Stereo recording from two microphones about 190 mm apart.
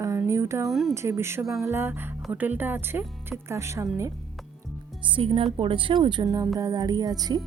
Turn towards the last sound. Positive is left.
turn(degrees=-20)  # may be behind; listen again after turning